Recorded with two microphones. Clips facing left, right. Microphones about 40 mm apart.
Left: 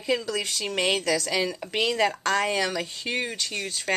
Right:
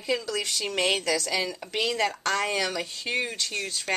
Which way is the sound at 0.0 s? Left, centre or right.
Centre.